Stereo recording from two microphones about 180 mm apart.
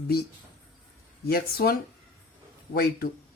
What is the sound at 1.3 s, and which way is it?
Speech, 60° left (ahead or behind).